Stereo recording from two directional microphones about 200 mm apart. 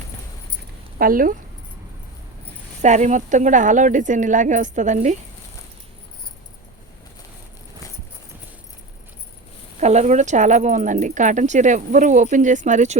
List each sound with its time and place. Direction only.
0.9 s speech: 45° right (ahead or behind)
2.8 s speech: 35° right (ahead or behind)
9.8 s speech: 35° right (ahead or behind)